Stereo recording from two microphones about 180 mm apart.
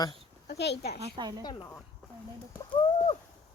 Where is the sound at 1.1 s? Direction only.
25° right (ahead or behind).